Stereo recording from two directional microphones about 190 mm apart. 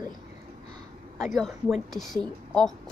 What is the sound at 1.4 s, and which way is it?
Speech, centre (ahead or behind).